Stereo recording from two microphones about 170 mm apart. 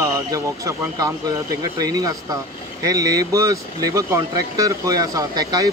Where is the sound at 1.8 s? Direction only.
20° right (ahead or behind).